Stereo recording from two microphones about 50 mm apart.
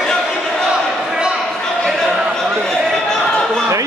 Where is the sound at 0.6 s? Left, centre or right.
Centre.